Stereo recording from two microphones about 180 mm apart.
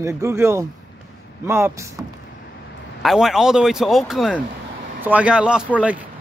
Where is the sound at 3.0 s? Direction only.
Centre (ahead or behind).